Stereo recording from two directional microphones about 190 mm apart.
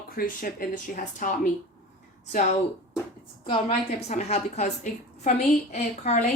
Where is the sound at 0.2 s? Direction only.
50° left (ahead or behind).